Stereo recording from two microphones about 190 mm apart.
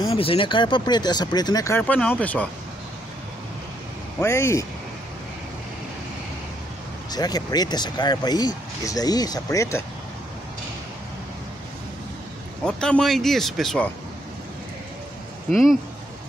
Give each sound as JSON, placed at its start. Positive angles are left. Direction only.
{"t": 0.1, "sound": "speech", "side_deg": 30}
{"t": 4.2, "sound": "speech", "side_deg": 15}
{"t": 7.1, "sound": "speech", "side_deg": 20}
{"t": 12.6, "sound": "speech", "side_deg": 5}
{"t": 15.5, "sound": "speech", "side_deg": 0}